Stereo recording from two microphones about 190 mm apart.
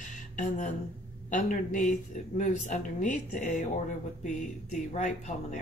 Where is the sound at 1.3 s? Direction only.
45° left (ahead or behind).